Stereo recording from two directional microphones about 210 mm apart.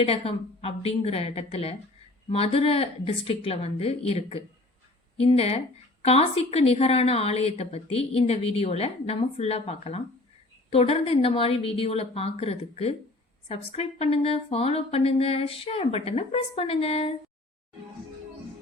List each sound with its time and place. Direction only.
0.0 s a woman's voice: 30° left (ahead or behind)